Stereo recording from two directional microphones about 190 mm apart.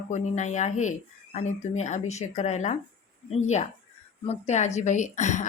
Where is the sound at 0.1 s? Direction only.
40° left (ahead or behind).